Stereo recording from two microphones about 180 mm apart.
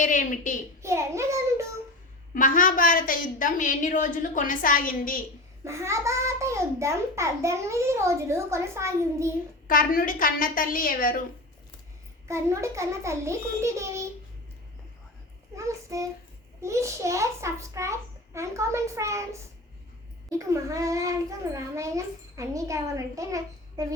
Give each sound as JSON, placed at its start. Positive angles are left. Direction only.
{"t": 0.0, "sound": "a woman's voice", "side_deg": 45}
{"t": 0.8, "sound": "a sound", "side_deg": -15}
{"t": 2.3, "sound": "a woman's voice", "side_deg": 50}
{"t": 5.6, "sound": "a child's voice", "side_deg": -15}
{"t": 9.6, "sound": "a woman's voice", "side_deg": 50}
{"t": 12.3, "sound": "a child's voice", "side_deg": -15}
{"t": 15.5, "sound": "a child's voice", "side_deg": -15}
{"t": 20.4, "sound": "a child's voice", "side_deg": -15}